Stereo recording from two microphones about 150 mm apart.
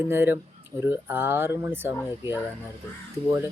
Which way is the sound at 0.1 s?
15° right (ahead or behind).